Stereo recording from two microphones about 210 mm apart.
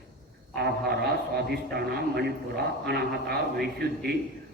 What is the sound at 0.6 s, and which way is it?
A man's voice, 50° right (ahead or behind).